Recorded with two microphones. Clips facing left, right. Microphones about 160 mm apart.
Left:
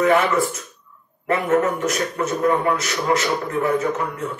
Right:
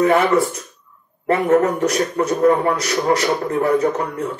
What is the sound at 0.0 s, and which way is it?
A man's voice, 35° right (ahead or behind).